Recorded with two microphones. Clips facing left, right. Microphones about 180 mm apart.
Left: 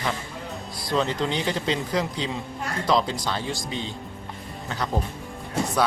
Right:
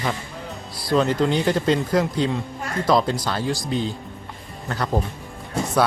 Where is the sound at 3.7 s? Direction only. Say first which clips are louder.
Right 7 dB; 40° right (ahead or behind).